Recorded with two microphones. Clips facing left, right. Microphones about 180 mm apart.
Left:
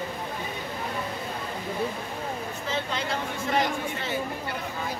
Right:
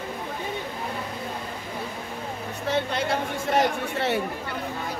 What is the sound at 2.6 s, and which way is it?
Chatter, 60° right (ahead or behind).